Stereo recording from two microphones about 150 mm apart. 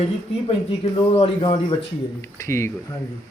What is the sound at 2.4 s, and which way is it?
Speech, 20° left (ahead or behind).